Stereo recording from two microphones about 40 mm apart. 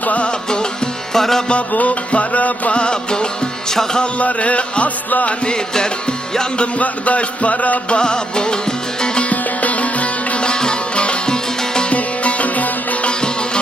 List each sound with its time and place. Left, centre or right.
0.0 s music: left
0.3 s music: left
1.1 s music: centre
1.7 s music: left; by 4.0 s centre
4.0 s music: left
5.5 s music: centre
6.6 s music: left
7.9 s music: left
9.3 s music: left
10.4 s music: left
11.9 s sitar: left
13.1 s music: left